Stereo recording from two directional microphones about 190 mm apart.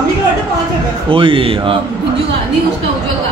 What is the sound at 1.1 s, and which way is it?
Speech, 25° right (ahead or behind).